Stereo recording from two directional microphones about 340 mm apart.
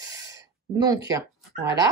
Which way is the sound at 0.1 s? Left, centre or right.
Centre.